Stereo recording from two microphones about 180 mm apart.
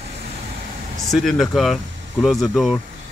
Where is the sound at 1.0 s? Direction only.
Centre (ahead or behind).